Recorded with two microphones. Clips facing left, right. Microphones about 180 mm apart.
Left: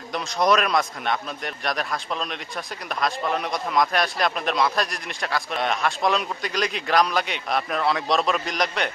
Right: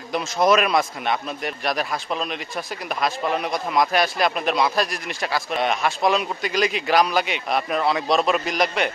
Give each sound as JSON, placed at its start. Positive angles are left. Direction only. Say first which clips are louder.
{"t": 0.1, "sound": "a man's voice", "louder": "right 3 dB", "side_deg": -5}